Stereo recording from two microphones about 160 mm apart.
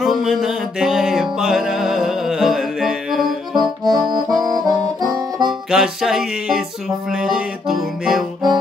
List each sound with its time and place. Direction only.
0.0 s music: centre (ahead or behind)
3.5 s accordion: 25° right (ahead or behind)
5.7 s music: 5° right (ahead or behind)